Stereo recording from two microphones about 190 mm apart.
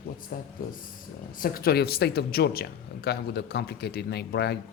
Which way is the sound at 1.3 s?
50° left (ahead or behind).